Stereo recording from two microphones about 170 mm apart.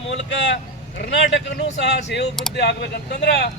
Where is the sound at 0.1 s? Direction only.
90° left.